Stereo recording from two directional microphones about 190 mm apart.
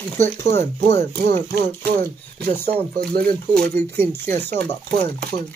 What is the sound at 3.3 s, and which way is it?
Speech, 40° right (ahead or behind).